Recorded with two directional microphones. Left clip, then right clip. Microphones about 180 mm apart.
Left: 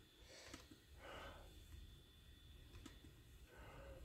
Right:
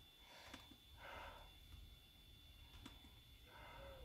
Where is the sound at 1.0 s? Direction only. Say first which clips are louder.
Right 1 dB; 10° left (ahead or behind).